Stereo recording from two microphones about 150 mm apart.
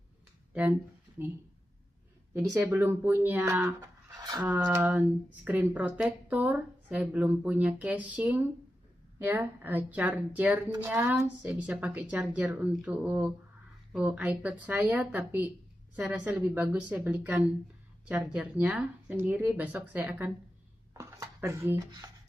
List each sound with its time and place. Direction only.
0.5 s speech: 10° right (ahead or behind)
2.4 s speech: 10° right (ahead or behind)
4.2 s a sound: 30° right (ahead or behind)
4.7 s speech: 10° right (ahead or behind)